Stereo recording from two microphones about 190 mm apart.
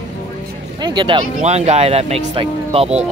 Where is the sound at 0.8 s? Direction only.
25° right (ahead or behind).